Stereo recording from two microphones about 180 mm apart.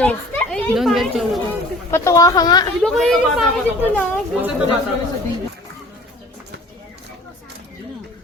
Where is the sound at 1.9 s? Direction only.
15° left (ahead or behind).